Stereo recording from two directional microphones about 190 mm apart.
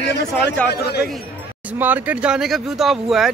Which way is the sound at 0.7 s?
60° left (ahead or behind).